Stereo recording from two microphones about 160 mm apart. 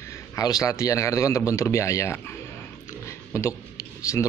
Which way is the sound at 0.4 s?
20° left (ahead or behind).